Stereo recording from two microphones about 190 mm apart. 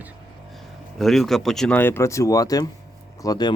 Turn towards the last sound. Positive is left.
turn(degrees=20)  # may be behind; listen again after turning